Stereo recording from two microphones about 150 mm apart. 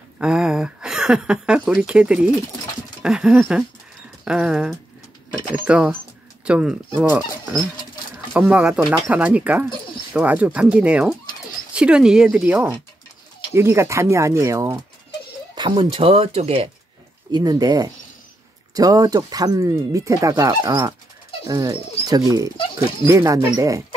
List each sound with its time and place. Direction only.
0.2 s speech: 5° right (ahead or behind)
3.0 s a sound: 5° right (ahead or behind)
4.2 s speech: 5° right (ahead or behind)
8.3 s speech: 10° right (ahead or behind)
15.5 s speech: 35° right (ahead or behind)
17.3 s speech: 25° right (ahead or behind)